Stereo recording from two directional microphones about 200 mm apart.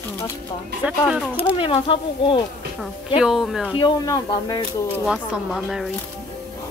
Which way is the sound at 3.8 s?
20° left (ahead or behind).